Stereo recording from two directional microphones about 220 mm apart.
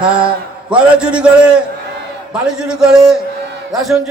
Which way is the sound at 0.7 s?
5° right (ahead or behind).